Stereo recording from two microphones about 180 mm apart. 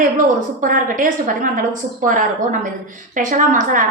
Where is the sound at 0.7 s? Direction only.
50° right (ahead or behind).